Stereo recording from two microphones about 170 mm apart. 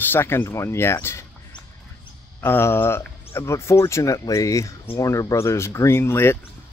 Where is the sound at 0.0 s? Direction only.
15° left (ahead or behind).